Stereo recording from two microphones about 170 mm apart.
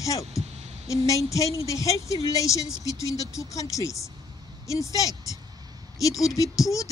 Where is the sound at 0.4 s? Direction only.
40° right (ahead or behind).